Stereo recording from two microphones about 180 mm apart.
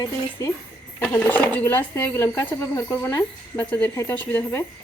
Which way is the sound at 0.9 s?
10° left (ahead or behind).